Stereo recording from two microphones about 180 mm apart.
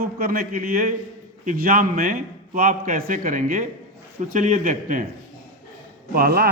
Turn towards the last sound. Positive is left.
turn(degrees=-55)  # may be behind; listen again after turning